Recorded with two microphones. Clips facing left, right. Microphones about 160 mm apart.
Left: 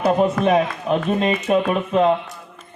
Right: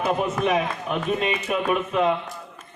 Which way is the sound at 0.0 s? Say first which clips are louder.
Left 6 dB; 35° left (ahead or behind).